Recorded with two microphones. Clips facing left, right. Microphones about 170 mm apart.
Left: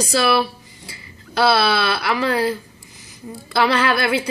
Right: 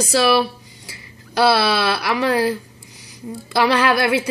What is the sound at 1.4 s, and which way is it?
Speech, 15° right (ahead or behind).